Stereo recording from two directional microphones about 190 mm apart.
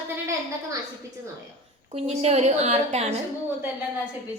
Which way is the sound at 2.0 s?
30° right (ahead or behind).